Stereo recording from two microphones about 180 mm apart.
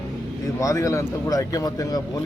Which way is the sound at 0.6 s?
15° left (ahead or behind).